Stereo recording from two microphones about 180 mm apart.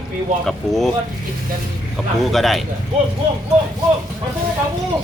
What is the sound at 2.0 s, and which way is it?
Speech, centre (ahead or behind).